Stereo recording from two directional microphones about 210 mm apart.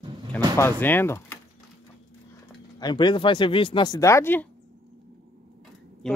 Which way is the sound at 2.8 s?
20° left (ahead or behind).